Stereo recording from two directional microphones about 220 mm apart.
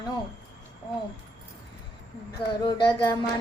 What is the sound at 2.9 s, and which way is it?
Speech, 20° left (ahead or behind).